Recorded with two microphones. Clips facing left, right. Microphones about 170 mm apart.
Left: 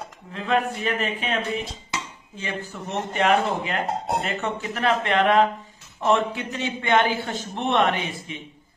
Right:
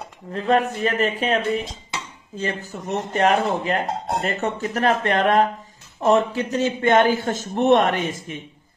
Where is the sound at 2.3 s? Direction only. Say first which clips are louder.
Right 4 dB; 40° right (ahead or behind).